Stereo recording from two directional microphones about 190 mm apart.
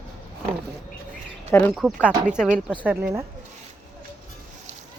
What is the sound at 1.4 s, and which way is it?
Speech, 10° left (ahead or behind).